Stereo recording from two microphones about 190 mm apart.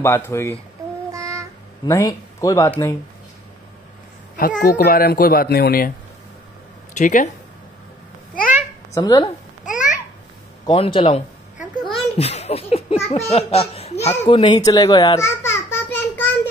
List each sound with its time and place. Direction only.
0.0 s speech: 15° left (ahead or behind)
1.1 s child singing: 15° right (ahead or behind)
1.9 s speech: 20° left (ahead or behind)
4.4 s speech: 50° left (ahead or behind)
7.0 s speech: 40° left (ahead or behind)
8.9 s speech: 20° left (ahead or behind)
9.7 s babbling: 40° left (ahead or behind)
10.6 s speech: 25° left (ahead or behind)
11.8 s a sound: 30° left (ahead or behind)
13.1 s speech: 30° left (ahead or behind)
15.7 s a sound: 10° left (ahead or behind)